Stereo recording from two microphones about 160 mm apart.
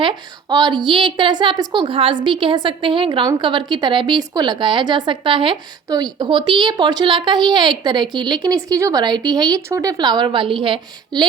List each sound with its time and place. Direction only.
0.0 s a woman's voice: 25° right (ahead or behind)